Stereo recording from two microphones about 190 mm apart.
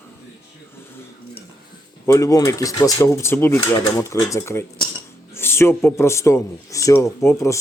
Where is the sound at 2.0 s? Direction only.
15° left (ahead or behind).